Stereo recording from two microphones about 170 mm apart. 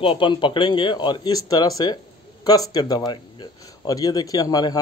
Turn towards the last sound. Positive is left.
turn(degrees=20)  # may be behind; listen again after turning